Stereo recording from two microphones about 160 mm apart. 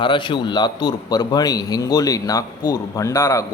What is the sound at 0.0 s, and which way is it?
A man's voice, 30° left (ahead or behind).